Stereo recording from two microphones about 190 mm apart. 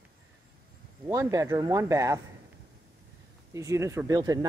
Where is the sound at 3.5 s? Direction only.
15° right (ahead or behind).